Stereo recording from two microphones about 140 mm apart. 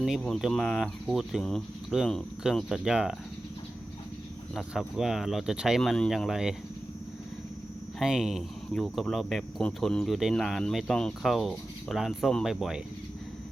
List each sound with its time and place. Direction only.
0.0 s speech: centre (ahead or behind)
4.5 s speech: centre (ahead or behind)
7.9 s speech: 5° right (ahead or behind)